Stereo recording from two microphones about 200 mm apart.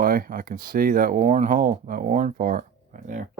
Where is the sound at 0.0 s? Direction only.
45° right (ahead or behind).